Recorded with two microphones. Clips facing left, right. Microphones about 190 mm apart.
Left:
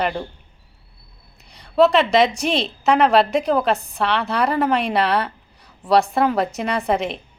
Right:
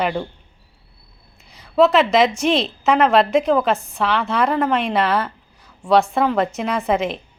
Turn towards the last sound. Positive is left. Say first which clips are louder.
# right 1 dB
turn(degrees=0)  # may be behind; listen again after turning